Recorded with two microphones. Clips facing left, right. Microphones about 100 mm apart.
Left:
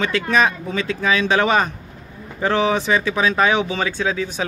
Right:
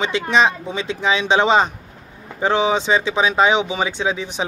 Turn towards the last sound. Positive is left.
turn(degrees=-20)  # may be behind; listen again after turning